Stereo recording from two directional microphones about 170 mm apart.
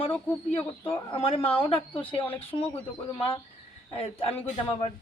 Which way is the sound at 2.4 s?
30° left (ahead or behind).